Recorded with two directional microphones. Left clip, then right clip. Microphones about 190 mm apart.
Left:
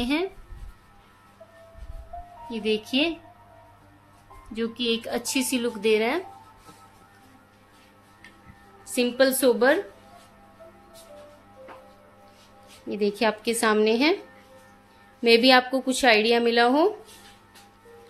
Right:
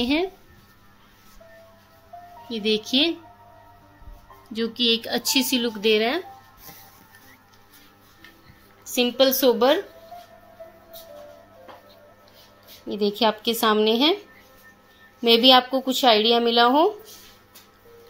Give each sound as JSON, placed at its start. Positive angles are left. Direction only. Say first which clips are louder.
{"t": 0.0, "sound": "a woman's voice", "louder": "right 3 dB", "side_deg": -15}
{"t": 2.5, "sound": "a woman's voice", "louder": "right 3 dB", "side_deg": -20}
{"t": 4.6, "sound": "a woman's voice", "louder": "right 5 dB", "side_deg": -25}
{"t": 9.0, "sound": "a woman's voice", "louder": "right 2 dB", "side_deg": -10}
{"t": 12.8, "sound": "a woman's voice", "louder": "right 2 dB", "side_deg": -10}
{"t": 15.2, "sound": "a woman's voice", "louder": "right 2 dB", "side_deg": -10}